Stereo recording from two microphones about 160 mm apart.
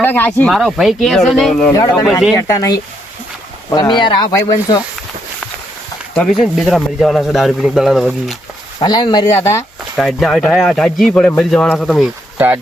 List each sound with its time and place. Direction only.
0.0 s speech: 10° left (ahead or behind)
1.7 s speech: 25° left (ahead or behind)
6.1 s speech: centre (ahead or behind)
8.8 s speech: 25° left (ahead or behind)
10.0 s speech: centre (ahead or behind)